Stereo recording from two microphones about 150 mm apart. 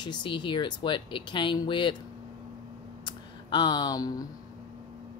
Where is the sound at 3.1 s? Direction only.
30° left (ahead or behind).